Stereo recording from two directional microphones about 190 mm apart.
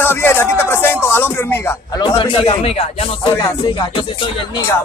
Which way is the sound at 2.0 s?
25° left (ahead or behind).